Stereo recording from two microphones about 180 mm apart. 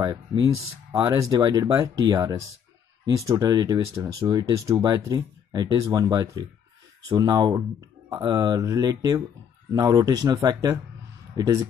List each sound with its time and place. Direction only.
0.0 s speech: 25° right (ahead or behind)